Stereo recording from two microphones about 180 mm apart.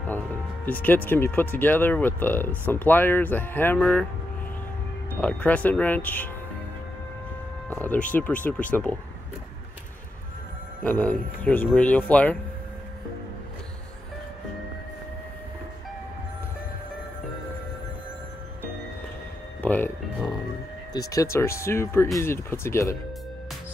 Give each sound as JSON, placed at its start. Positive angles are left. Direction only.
{"t": 0.7, "sound": "speech", "side_deg": 10}
{"t": 5.2, "sound": "speech", "side_deg": 10}
{"t": 7.7, "sound": "speech", "side_deg": 10}
{"t": 10.8, "sound": "speech", "side_deg": 10}
{"t": 19.6, "sound": "speech", "side_deg": 10}
{"t": 20.9, "sound": "speech", "side_deg": 20}